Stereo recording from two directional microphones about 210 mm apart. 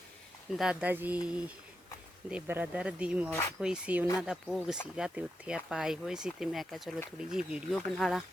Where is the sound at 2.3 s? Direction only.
10° right (ahead or behind).